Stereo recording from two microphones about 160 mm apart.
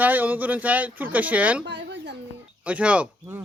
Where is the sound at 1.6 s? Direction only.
90° right.